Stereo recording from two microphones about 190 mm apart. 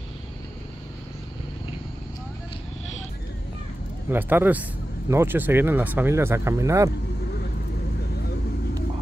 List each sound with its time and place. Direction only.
4.1 s speech: 10° right (ahead or behind)